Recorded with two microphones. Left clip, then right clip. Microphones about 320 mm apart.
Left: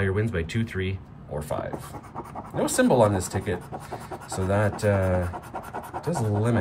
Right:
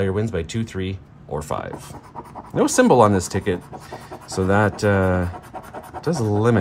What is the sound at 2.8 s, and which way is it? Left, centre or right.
Speech, right.